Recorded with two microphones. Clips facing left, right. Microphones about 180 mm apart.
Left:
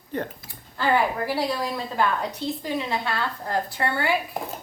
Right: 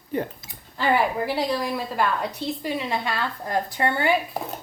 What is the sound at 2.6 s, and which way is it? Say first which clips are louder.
Speech: right 1 dB; 15° right (ahead or behind).